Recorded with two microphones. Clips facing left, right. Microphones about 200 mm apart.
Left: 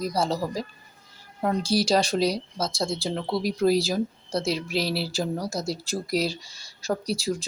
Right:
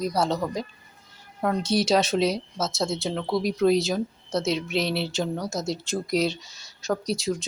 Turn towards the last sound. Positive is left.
turn(degrees=0)  # may be behind; listen again after turning